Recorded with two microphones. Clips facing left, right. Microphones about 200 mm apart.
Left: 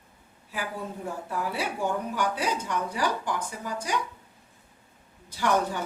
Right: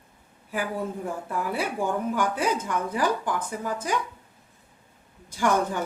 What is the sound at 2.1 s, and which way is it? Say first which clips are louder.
A woman's voice: right 3 dB; 50° right (ahead or behind).